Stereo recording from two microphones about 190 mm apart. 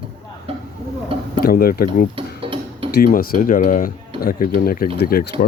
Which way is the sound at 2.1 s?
30° right (ahead or behind).